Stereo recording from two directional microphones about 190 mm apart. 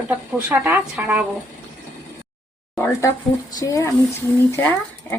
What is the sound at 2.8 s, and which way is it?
Speech, 15° left (ahead or behind).